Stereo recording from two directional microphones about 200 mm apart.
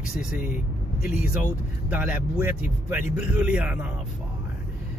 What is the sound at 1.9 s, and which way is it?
Speech, 10° right (ahead or behind).